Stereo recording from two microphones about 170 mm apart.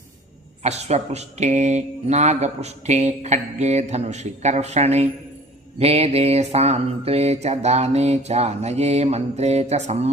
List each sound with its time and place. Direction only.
0.6 s speech: 40° right (ahead or behind)